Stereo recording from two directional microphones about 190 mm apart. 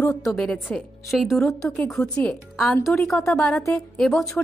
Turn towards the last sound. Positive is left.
turn(degrees=0)  # may be behind; listen again after turning